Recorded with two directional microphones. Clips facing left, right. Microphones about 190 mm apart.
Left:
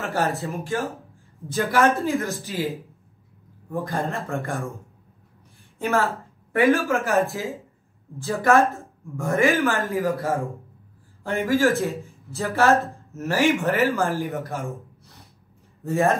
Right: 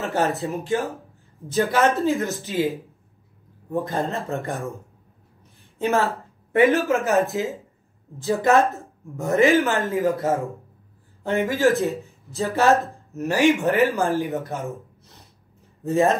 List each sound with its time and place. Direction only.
0.0 s speech: 20° right (ahead or behind)
3.7 s speech: 20° right (ahead or behind)
5.8 s a woman's voice: 20° right (ahead or behind)
7.1 s speech: 20° right (ahead or behind)
14.5 s gasp: 20° right (ahead or behind)
15.8 s speech: 20° right (ahead or behind)